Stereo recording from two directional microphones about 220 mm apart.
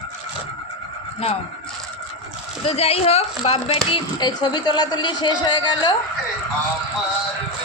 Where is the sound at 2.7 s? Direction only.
25° left (ahead or behind).